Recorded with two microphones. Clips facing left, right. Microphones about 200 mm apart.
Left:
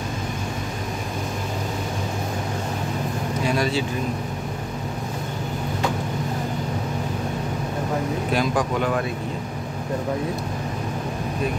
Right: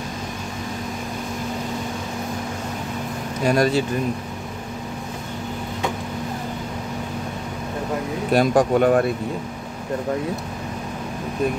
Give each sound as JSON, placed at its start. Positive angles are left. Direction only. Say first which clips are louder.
{"t": 3.4, "sound": "speech", "louder": "right 6 dB", "side_deg": -45}
{"t": 8.3, "sound": "speech", "louder": "right 8 dB", "side_deg": -50}